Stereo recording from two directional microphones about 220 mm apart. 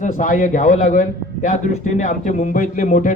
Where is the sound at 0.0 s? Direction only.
35° left (ahead or behind).